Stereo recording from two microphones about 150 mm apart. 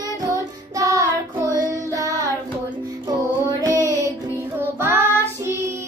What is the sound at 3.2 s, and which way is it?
Child singing, 25° right (ahead or behind).